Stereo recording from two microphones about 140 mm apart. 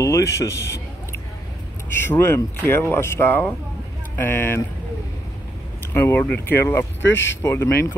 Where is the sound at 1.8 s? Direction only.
15° left (ahead or behind).